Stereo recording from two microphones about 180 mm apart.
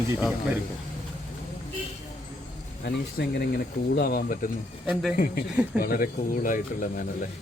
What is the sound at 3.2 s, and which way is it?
Speech, 60° left (ahead or behind).